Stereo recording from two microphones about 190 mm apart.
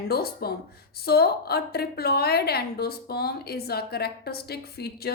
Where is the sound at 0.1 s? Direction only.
55° left (ahead or behind).